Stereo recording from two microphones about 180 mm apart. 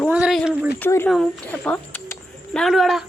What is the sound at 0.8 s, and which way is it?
Speech, 15° left (ahead or behind).